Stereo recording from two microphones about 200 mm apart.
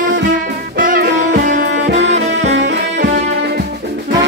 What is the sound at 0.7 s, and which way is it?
Music, 45° right (ahead or behind).